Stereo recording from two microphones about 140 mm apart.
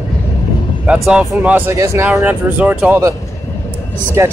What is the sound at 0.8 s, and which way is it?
Speech, 5° right (ahead or behind).